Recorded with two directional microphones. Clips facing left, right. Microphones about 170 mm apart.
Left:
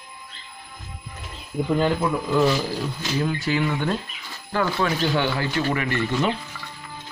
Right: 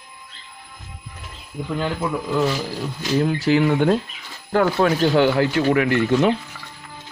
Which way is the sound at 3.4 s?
65° right (ahead or behind).